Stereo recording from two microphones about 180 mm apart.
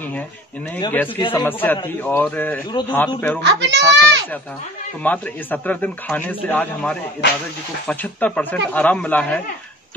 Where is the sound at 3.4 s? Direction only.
75° right (ahead or behind).